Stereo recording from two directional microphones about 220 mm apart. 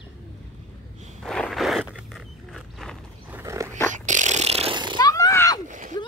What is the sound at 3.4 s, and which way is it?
Dog, 15° right (ahead or behind).